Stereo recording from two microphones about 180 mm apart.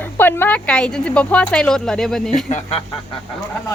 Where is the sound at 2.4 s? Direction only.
35° left (ahead or behind).